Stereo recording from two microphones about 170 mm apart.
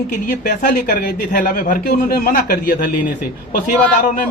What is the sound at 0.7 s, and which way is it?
A man's voice, 65° left (ahead or behind).